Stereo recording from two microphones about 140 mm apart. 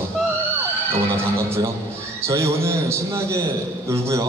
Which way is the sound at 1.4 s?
20° right (ahead or behind).